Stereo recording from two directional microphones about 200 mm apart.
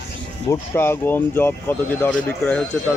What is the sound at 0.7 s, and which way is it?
Speech, 10° left (ahead or behind).